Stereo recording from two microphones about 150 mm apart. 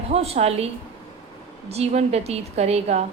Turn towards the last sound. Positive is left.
turn(degrees=-45)  # may be behind; listen again after turning